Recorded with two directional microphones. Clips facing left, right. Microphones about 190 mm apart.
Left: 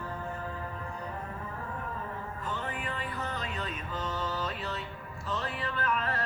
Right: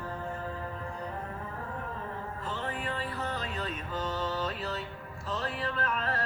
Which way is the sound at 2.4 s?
35° right (ahead or behind).